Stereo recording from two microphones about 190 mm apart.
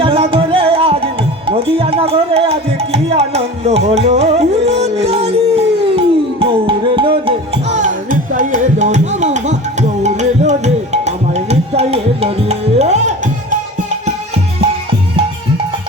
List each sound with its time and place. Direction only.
0.0 s music: 30° right (ahead or behind)